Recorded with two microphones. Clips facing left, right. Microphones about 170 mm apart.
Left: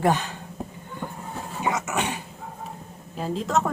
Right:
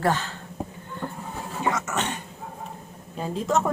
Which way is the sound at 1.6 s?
15° left (ahead or behind).